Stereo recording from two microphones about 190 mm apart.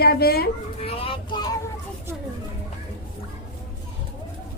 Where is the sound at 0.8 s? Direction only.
30° left (ahead or behind).